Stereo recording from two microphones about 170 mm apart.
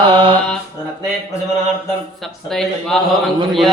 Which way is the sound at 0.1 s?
30° right (ahead or behind).